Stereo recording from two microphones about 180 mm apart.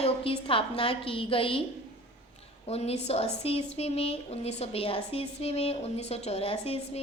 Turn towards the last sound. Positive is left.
turn(degrees=35)  # may be behind; listen again after turning